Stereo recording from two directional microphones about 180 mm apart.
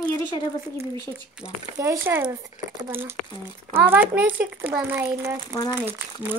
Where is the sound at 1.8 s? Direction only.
15° right (ahead or behind).